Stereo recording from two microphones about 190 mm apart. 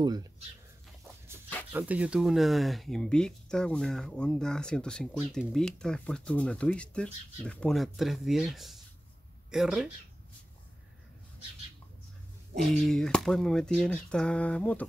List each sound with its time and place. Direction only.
0.0 s speech: 20° right (ahead or behind)
1.7 s speech: 10° right (ahead or behind)
12.7 s speech: 5° left (ahead or behind)